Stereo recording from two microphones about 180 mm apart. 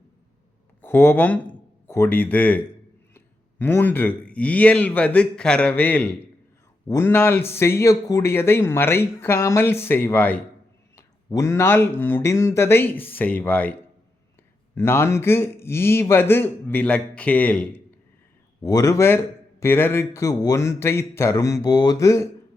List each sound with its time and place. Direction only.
0.8 s a man's voice: 10° left (ahead or behind)
14.8 s a man's voice: 15° left (ahead or behind)
18.6 s a man's voice: 20° left (ahead or behind)